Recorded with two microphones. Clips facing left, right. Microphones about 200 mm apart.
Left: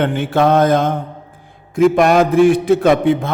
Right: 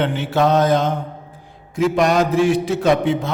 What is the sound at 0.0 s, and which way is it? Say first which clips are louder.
A man's voice: left 3 dB; 55° left (ahead or behind).